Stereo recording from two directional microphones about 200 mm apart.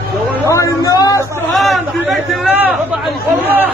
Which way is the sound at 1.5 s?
Centre (ahead or behind).